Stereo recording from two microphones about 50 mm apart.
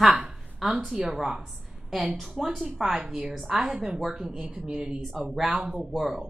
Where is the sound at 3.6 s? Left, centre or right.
Centre.